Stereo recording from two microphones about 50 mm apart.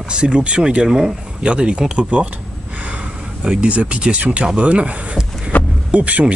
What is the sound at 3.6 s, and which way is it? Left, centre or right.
Speech, right.